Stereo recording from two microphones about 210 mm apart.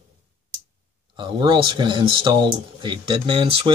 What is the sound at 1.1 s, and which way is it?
Speech, 20° right (ahead or behind).